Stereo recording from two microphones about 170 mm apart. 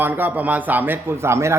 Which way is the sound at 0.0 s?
10° right (ahead or behind).